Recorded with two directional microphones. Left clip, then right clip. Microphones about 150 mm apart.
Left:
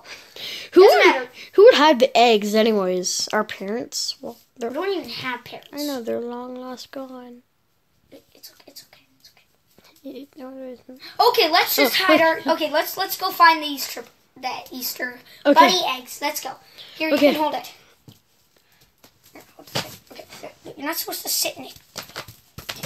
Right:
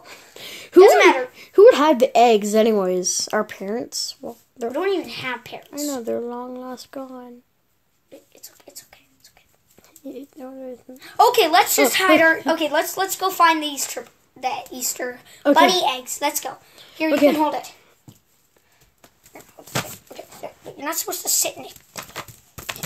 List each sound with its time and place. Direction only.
0.0 s a sound: 5° right (ahead or behind)
1.3 s speech: centre (ahead or behind)
4.7 s a woman's voice: 35° right (ahead or behind)
5.7 s speech: centre (ahead or behind)
8.4 s whispering: 40° right (ahead or behind)
9.8 s speech: centre (ahead or behind)
11.0 s a woman's voice: 45° right (ahead or behind)
16.7 s a sound: centre (ahead or behind)
17.1 s speech: centre (ahead or behind)
17.4 s a child's voice: 15° right (ahead or behind)
19.3 s bird: 55° right (ahead or behind)
19.7 s a sound: 45° right (ahead or behind)
20.4 s a woman's voice: 35° right (ahead or behind)